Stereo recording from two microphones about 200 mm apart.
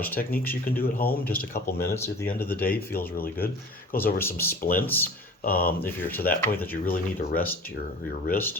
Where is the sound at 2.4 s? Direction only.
50° left (ahead or behind).